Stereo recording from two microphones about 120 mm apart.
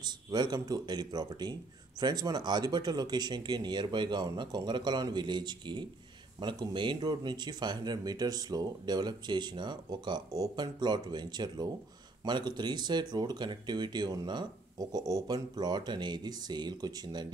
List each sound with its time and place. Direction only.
0.0 s speech: 35° right (ahead or behind)